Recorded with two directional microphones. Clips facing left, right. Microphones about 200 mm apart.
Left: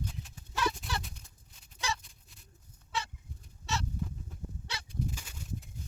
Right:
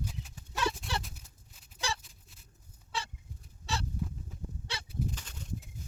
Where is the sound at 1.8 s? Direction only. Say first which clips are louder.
Left 1 dB; 30° right (ahead or behind).